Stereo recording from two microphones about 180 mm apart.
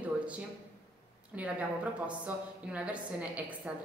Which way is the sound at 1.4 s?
5° right (ahead or behind).